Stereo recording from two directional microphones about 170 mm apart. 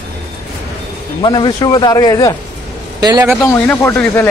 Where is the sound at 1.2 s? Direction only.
25° left (ahead or behind).